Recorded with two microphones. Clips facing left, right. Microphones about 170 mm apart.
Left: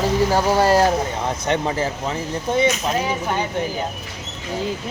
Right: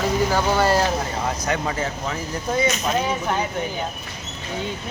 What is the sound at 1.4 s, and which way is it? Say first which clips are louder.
Speech: left 3 dB; 30° left (ahead or behind).